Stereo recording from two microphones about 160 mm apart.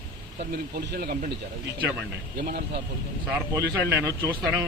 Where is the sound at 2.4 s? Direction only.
70° right (ahead or behind).